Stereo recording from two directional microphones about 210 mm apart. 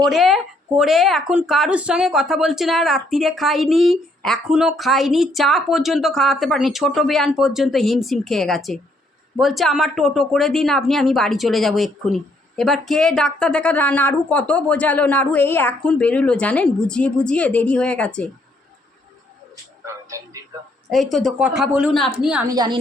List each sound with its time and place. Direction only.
0.0 s a woman's voice: centre (ahead or behind)
19.8 s music: 15° right (ahead or behind)
20.9 s a woman's voice: centre (ahead or behind)
22.4 s a woman's voice: 20° right (ahead or behind)